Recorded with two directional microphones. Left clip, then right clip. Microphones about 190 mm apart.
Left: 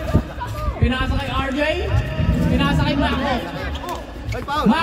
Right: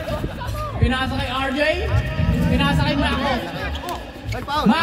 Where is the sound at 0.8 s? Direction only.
25° right (ahead or behind).